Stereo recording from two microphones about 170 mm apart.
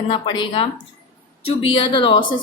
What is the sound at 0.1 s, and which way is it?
A woman's voice, 30° left (ahead or behind).